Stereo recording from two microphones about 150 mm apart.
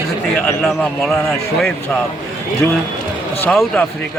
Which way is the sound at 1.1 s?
15° left (ahead or behind).